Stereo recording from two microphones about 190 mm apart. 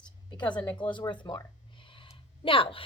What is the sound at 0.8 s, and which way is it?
A woman's voice, 25° left (ahead or behind).